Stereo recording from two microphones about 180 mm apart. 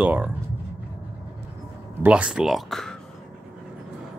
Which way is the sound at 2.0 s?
5° right (ahead or behind).